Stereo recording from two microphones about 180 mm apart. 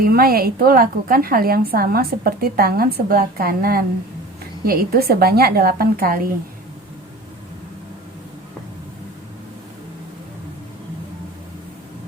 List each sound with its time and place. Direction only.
0.0 s a woman's voice: 55° right (ahead or behind)